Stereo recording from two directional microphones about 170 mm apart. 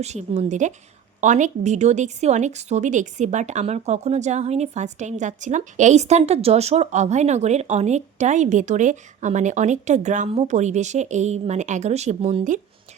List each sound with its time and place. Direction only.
0.0 s a woman's voice: 40° right (ahead or behind)